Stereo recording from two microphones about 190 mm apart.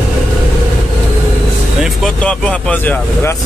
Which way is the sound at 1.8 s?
Centre (ahead or behind).